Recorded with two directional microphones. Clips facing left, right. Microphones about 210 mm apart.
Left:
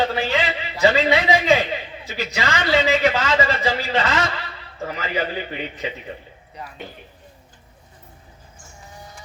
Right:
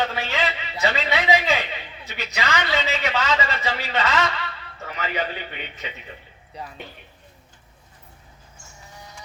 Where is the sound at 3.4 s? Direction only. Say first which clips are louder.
Left 5 dB; 30° left (ahead or behind).